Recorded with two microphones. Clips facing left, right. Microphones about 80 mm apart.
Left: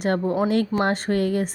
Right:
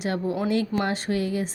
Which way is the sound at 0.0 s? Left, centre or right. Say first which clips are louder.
Left 4 dB; left.